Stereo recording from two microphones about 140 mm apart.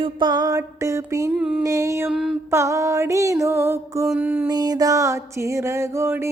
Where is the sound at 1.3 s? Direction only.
5° right (ahead or behind).